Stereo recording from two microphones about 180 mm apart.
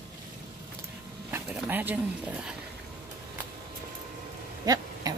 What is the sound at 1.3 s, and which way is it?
Vehicle, 10° right (ahead or behind).